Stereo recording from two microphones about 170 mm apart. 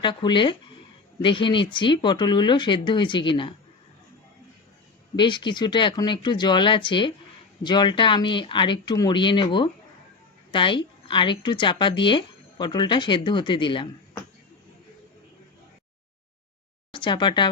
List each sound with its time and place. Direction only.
0.0 s a woman's voice: 25° left (ahead or behind)
5.1 s a woman's voice: 25° left (ahead or behind)
16.9 s speech: 30° left (ahead or behind)